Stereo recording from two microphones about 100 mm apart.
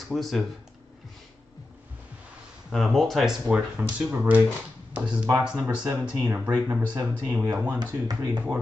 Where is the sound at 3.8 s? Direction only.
15° right (ahead or behind).